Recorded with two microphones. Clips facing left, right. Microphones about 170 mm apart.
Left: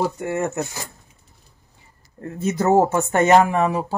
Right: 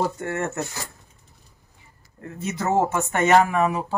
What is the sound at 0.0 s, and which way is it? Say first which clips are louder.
Speech: left 3 dB; 15° left (ahead or behind).